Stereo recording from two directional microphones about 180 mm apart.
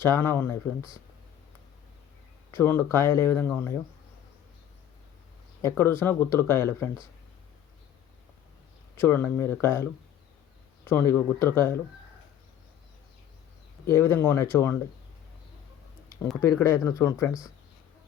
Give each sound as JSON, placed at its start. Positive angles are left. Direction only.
{"t": 0.0, "sound": "speech", "side_deg": 15}
{"t": 2.5, "sound": "speech", "side_deg": 15}
{"t": 5.6, "sound": "speech", "side_deg": 15}
{"t": 9.0, "sound": "speech", "side_deg": 10}
{"t": 13.8, "sound": "speech", "side_deg": 15}
{"t": 16.4, "sound": "speech", "side_deg": 15}